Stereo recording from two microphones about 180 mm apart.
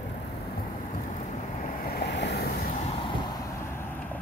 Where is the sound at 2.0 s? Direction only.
70° left (ahead or behind).